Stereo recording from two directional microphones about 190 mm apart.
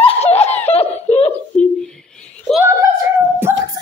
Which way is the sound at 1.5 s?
5° left (ahead or behind).